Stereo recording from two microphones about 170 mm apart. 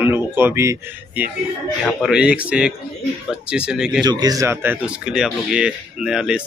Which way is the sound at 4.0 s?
25° right (ahead or behind).